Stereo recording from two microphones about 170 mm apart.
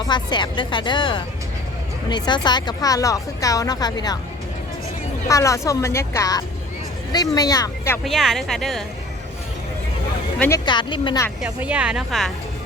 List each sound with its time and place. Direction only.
0.1 s speech: 25° left (ahead or behind)
5.3 s speech: 20° left (ahead or behind)
8.0 s a woman's voice: centre (ahead or behind)
10.3 s speech: 10° left (ahead or behind)
10.7 s speech: 30° left (ahead or behind)
11.3 s a woman's voice: 5° right (ahead or behind)